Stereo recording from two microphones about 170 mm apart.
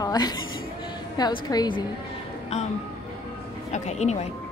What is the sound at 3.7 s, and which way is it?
Speech, 40° left (ahead or behind).